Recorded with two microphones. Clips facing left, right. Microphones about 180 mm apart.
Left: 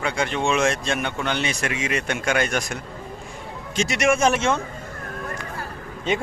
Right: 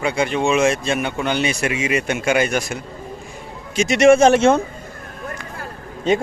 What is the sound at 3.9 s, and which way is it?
Speech, 25° right (ahead or behind).